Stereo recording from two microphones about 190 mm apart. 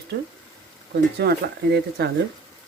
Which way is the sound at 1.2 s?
60° right (ahead or behind).